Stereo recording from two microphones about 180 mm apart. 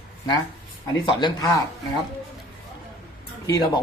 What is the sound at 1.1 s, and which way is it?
Speech, 25° left (ahead or behind).